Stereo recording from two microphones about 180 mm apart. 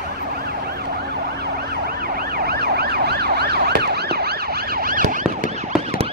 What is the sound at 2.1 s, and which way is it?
Emergency vehicle, 55° right (ahead or behind).